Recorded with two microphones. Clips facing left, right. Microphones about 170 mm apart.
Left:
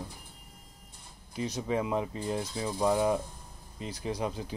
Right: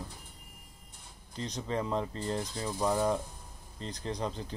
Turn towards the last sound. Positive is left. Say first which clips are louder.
# left 2 dB
turn(degrees=10)  # may be behind; listen again after turning